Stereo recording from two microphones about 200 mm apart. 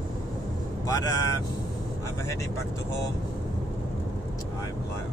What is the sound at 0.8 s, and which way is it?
Speech, 15° left (ahead or behind).